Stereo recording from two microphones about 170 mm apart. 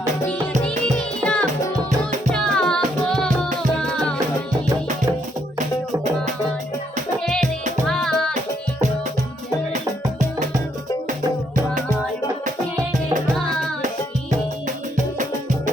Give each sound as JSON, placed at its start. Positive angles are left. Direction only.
{"t": 0.6, "sound": "music", "side_deg": 5}
{"t": 7.9, "sound": "music", "side_deg": 5}
{"t": 14.9, "sound": "music", "side_deg": -45}